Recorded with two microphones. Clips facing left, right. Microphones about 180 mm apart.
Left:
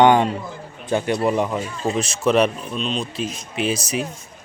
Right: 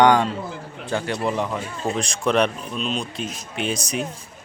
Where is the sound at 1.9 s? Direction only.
5° left (ahead or behind).